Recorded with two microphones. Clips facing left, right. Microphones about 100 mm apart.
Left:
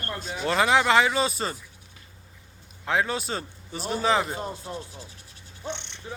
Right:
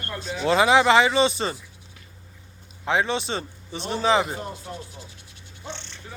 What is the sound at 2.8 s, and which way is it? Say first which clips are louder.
A man's voice: right 2 dB; centre (ahead or behind).